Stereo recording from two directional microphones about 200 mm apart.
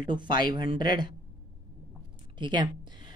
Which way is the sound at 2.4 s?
20° right (ahead or behind).